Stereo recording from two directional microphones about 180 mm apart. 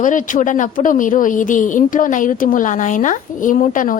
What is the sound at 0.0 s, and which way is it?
A woman's voice, 45° left (ahead or behind).